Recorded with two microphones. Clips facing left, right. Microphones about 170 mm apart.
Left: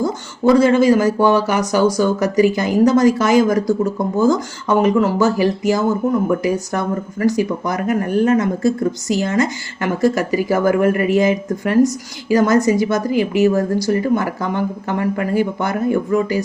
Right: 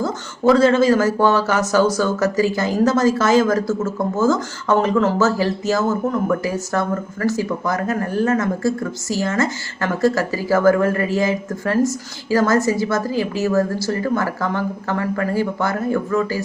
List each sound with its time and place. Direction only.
0.0 s speech: 15° left (ahead or behind)